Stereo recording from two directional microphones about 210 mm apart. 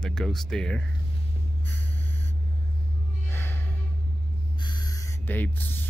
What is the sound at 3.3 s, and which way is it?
Music, 10° left (ahead or behind).